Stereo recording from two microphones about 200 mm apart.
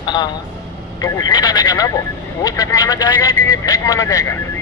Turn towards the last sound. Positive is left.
turn(degrees=15)  # may be behind; listen again after turning